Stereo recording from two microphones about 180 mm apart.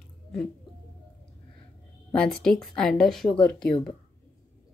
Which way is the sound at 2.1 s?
5° left (ahead or behind).